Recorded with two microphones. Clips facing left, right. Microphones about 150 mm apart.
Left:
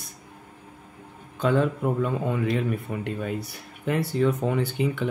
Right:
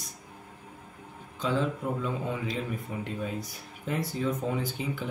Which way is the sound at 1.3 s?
60° left (ahead or behind).